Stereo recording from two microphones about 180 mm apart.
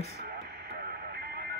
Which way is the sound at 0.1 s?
60° right (ahead or behind).